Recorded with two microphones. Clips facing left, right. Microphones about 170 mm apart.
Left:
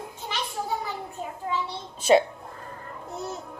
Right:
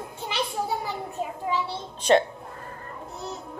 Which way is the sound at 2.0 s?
5° left (ahead or behind).